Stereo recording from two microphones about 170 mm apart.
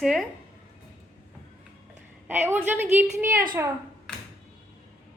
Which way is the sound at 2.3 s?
10° right (ahead or behind).